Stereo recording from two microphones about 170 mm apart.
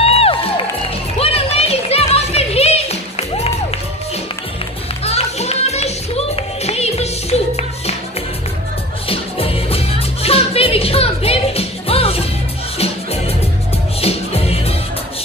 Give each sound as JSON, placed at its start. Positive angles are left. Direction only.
{"t": 0.0, "sound": "music", "side_deg": 35}
{"t": 5.0, "sound": "music", "side_deg": 40}
{"t": 9.1, "sound": "music", "side_deg": 35}